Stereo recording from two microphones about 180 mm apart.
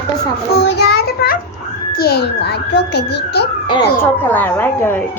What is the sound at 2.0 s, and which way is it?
A child's voice, 60° left (ahead or behind).